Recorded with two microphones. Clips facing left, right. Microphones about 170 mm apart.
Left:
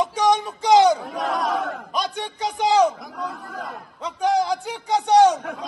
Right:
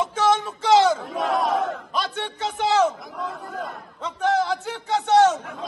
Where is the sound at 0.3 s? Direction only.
15° left (ahead or behind).